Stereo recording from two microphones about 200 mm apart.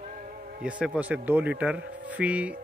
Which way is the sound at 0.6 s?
5° right (ahead or behind).